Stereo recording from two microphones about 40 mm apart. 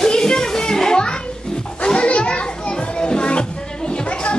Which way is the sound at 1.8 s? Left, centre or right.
Left.